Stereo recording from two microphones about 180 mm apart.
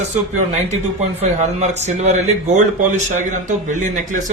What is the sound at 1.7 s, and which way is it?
A man's voice, 40° right (ahead or behind).